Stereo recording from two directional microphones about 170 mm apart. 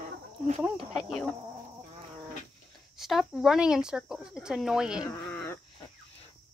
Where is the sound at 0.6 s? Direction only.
5° right (ahead or behind).